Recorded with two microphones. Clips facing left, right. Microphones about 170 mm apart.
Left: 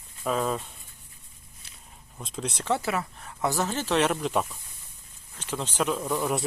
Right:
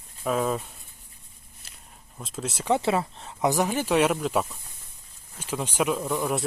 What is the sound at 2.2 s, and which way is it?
Speech, centre (ahead or behind).